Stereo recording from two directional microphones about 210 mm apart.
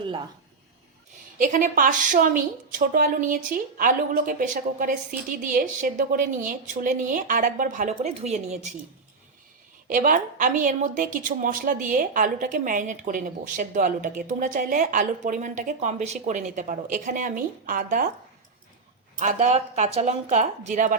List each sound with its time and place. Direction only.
1.4 s a woman's voice: 40° right (ahead or behind)
9.9 s a woman's voice: 40° right (ahead or behind)
19.2 s a woman's voice: 35° right (ahead or behind)